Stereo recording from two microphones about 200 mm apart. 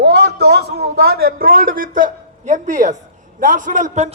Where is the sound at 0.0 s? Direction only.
55° right (ahead or behind).